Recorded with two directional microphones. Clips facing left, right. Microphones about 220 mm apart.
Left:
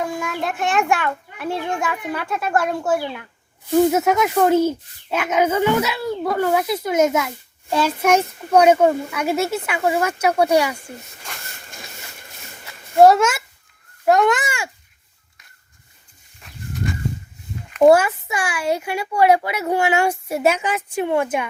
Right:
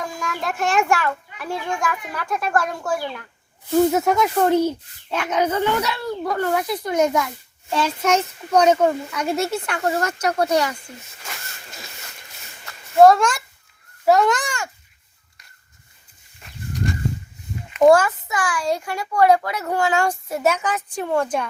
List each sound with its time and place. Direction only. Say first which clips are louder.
0.2 s a child's voice: left 1 dB; centre (ahead or behind)
1.5 s a child's voice: left 3 dB; 60° left (ahead or behind)
1.8 s a child's voice: left 2 dB; 5° left (ahead or behind)
5.9 s a child's voice: left 2 dB; 20° left (ahead or behind)
6.3 s speech: left 3 dB; 10° left (ahead or behind)
6.9 s a child's voice: left 2 dB; 20° left (ahead or behind)
7.7 s speech: left 3 dB; 10° left (ahead or behind)
13.0 s a child's voice: even; 5° left (ahead or behind)
16.4 s a sound: even; centre (ahead or behind)
17.7 s speech: left 1 dB; 5° left (ahead or behind)